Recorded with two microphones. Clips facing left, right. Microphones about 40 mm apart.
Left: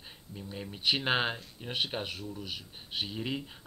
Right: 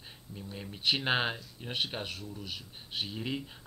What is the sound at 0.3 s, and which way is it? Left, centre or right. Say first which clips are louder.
Speech: left 2 dB; centre.